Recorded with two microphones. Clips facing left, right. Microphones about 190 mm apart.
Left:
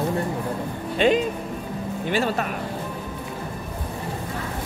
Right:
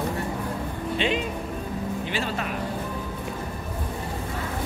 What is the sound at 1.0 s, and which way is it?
Speech, 45° left (ahead or behind).